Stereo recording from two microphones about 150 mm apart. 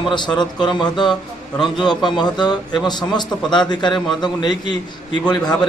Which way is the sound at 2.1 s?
30° left (ahead or behind).